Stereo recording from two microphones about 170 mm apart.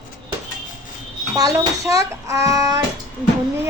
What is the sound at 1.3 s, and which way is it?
A child's voice, 20° right (ahead or behind).